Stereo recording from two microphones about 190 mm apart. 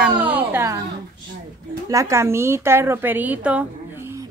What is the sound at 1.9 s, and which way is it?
Speech, 15° right (ahead or behind).